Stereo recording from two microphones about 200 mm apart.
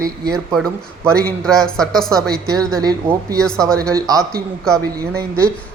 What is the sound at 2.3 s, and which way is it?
A woman's voice, 20° right (ahead or behind).